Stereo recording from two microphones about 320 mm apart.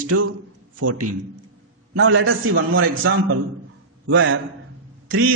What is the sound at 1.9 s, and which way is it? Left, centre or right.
Speech, right.